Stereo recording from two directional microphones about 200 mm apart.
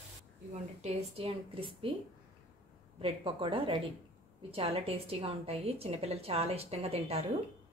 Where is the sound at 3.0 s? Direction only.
25° right (ahead or behind).